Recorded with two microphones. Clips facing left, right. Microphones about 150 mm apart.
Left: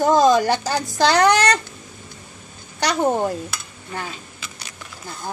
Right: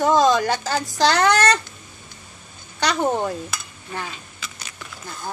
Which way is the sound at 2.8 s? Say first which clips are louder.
Left 2 dB; 10° left (ahead or behind).